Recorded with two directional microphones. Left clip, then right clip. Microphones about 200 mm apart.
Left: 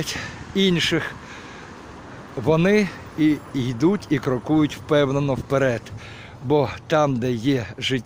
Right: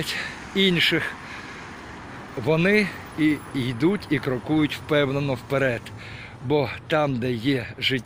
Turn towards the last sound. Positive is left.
turn(degrees=15)  # may be behind; listen again after turning